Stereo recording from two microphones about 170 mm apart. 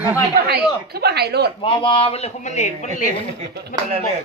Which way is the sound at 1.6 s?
30° left (ahead or behind).